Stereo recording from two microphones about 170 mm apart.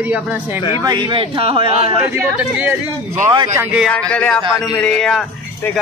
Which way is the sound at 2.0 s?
10° right (ahead or behind).